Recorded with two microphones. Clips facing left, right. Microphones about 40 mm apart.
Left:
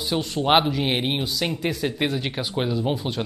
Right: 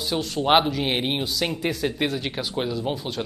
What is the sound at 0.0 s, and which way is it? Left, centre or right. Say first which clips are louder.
Speech: left 1 dB; centre.